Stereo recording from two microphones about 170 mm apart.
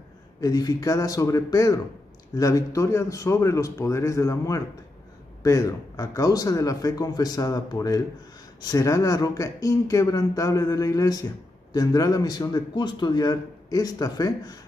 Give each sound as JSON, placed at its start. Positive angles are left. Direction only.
{"t": 0.4, "sound": "a man's voice", "side_deg": 20}